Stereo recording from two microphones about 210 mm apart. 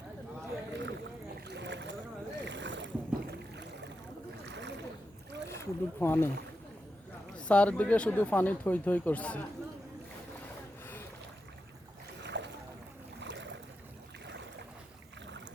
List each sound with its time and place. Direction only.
0.7 s rowboat: 60° right (ahead or behind)
1.5 s boat: 55° right (ahead or behind)
2.4 s rowboat: 60° right (ahead or behind)
4.4 s boat: 55° right (ahead or behind)
5.5 s speech: 10° left (ahead or behind)
7.3 s speech: 5° left (ahead or behind)
12.2 s boat: 55° right (ahead or behind)